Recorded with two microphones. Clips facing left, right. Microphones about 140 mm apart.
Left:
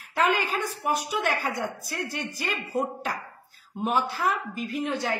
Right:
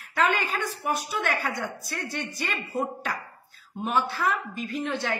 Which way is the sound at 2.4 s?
10° left (ahead or behind).